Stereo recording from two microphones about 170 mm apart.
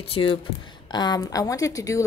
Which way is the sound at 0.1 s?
30° left (ahead or behind).